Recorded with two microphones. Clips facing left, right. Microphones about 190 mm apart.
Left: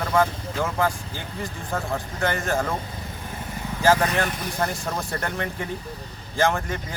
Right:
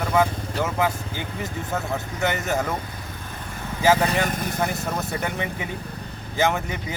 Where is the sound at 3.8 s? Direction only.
15° right (ahead or behind).